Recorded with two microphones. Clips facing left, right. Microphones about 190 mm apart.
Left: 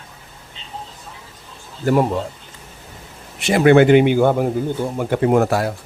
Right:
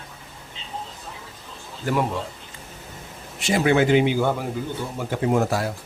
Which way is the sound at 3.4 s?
65° left (ahead or behind).